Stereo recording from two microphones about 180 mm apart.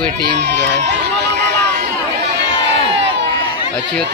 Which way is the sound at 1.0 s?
75° right (ahead or behind).